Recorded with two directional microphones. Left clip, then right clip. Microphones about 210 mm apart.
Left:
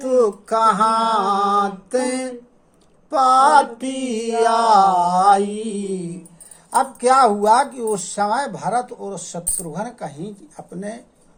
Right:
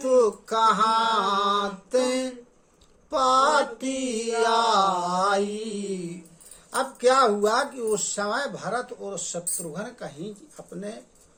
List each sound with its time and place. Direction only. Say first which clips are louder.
0.0 s a sound: left 3 dB; 20° left (ahead or behind)
1.3 s mantra: left 6 dB; 20° left (ahead or behind)
3.1 s a sound: left 7 dB; 20° left (ahead or behind)
3.6 s music: left 7 dB; 5° left (ahead or behind)
4.4 s speech: left 7 dB; 20° left (ahead or behind)
5.5 s mantra: left 5 dB; centre (ahead or behind)
6.7 s speech: left 6 dB; 20° left (ahead or behind)